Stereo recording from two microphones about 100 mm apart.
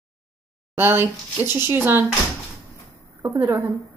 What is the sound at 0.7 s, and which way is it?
Speech, 20° right (ahead or behind).